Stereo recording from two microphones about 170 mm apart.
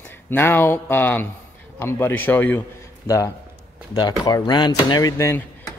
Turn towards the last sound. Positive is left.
turn(degrees=20)  # may be behind; listen again after turning